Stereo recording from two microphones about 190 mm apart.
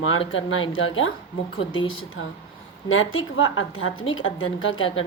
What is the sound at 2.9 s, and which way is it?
Speech, 90° left.